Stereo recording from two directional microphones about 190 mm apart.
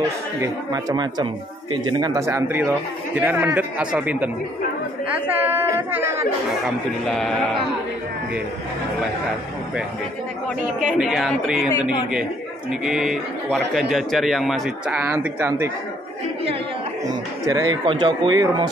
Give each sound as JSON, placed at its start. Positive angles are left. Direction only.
{"t": 0.4, "sound": "a man's voice", "side_deg": -20}
{"t": 5.6, "sound": "a man's voice", "side_deg": -10}
{"t": 6.6, "sound": "a man's voice", "side_deg": 0}
{"t": 11.0, "sound": "a man's voice", "side_deg": 0}
{"t": 17.5, "sound": "speech", "side_deg": -20}